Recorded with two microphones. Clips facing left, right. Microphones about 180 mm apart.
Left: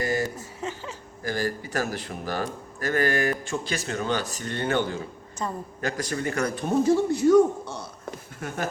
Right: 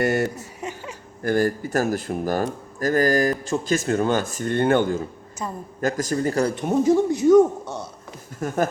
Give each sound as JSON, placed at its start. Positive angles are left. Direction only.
{"t": 0.0, "sound": "chuckle", "side_deg": -65}
{"t": 0.6, "sound": "a sound", "side_deg": -15}
{"t": 1.2, "sound": "speech", "side_deg": -50}
{"t": 5.4, "sound": "a woman's voice", "side_deg": -10}
{"t": 5.8, "sound": "a man's voice", "side_deg": -40}
{"t": 6.6, "sound": "speech", "side_deg": -20}
{"t": 8.4, "sound": "speech", "side_deg": -40}